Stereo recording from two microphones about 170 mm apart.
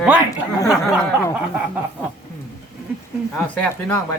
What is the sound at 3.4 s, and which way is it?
Speech, 15° left (ahead or behind).